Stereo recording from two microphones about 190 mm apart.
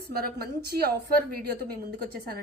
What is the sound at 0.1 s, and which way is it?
A woman's voice, 50° right (ahead or behind).